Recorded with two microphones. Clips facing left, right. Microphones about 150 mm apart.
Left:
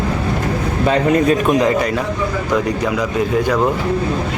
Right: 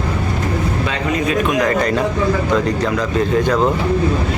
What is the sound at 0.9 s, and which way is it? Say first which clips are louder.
Speech: left 9 dB; 40° left (ahead or behind).